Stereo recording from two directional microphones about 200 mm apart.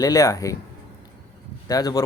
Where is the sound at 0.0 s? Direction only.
15° left (ahead or behind).